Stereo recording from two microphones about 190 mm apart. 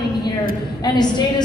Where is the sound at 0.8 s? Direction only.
20° left (ahead or behind).